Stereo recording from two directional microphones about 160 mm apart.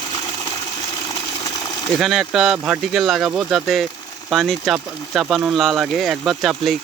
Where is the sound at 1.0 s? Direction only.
20° left (ahead or behind).